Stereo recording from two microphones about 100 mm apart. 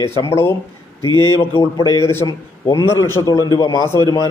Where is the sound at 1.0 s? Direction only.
50° right (ahead or behind).